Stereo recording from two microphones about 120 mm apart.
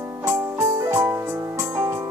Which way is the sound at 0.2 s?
20° right (ahead or behind).